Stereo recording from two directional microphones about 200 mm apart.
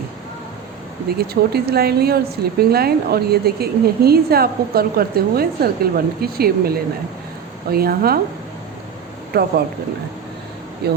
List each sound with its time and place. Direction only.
1.2 s a woman's voice: 50° right (ahead or behind)
9.3 s a woman's voice: 55° right (ahead or behind)
10.8 s a woman's voice: 55° right (ahead or behind)